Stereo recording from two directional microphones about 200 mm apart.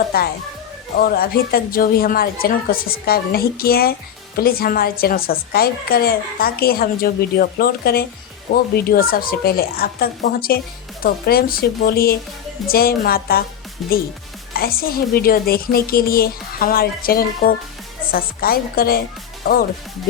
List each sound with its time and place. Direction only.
0.1 s a woman's voice: 50° left (ahead or behind)
14.5 s a woman's voice: 50° left (ahead or behind)